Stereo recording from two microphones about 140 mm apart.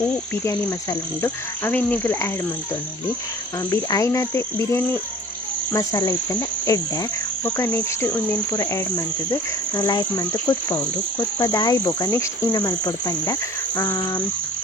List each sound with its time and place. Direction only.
0.4 s insect: 15° left (ahead or behind)
3.7 s insect: 25° left (ahead or behind)